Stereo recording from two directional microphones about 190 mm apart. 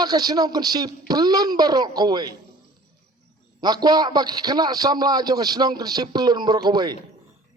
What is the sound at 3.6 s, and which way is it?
A man's voice, 20° right (ahead or behind).